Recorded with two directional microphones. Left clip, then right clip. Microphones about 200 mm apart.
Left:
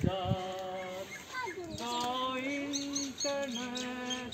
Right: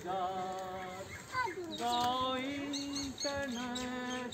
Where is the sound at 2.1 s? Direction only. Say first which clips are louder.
Even; 30° left (ahead or behind).